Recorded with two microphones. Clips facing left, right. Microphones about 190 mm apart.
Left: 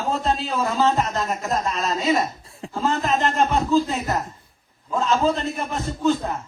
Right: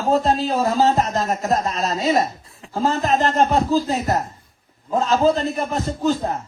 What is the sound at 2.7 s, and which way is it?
A man's voice, 40° right (ahead or behind).